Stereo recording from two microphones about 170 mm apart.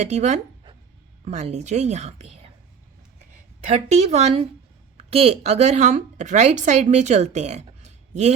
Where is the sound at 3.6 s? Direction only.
40° right (ahead or behind).